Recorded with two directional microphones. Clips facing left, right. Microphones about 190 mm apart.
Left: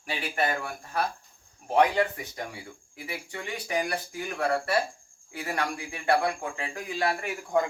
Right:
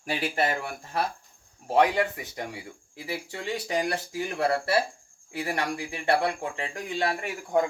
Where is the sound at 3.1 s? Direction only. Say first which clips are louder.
Right 4 dB; 30° right (ahead or behind).